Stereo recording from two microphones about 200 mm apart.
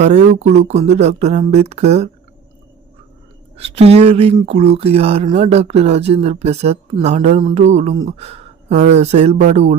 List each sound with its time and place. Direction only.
0.0 s speech: 35° right (ahead or behind)
3.6 s speech: 30° right (ahead or behind)